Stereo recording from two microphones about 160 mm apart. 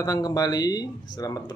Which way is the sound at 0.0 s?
25° left (ahead or behind).